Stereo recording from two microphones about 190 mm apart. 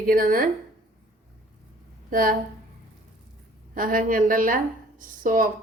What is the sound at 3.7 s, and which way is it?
A woman's voice, 45° right (ahead or behind).